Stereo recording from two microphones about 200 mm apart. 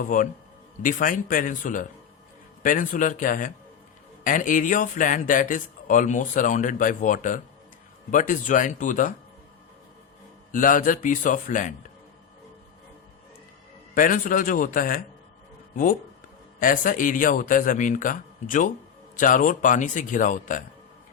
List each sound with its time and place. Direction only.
0.1 s speech: 40° left (ahead or behind)
10.5 s speech: 40° left (ahead or behind)
13.9 s speech: 45° left (ahead or behind)